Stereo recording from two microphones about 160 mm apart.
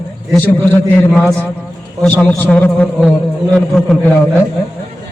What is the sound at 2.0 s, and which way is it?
A man's voice, 10° left (ahead or behind).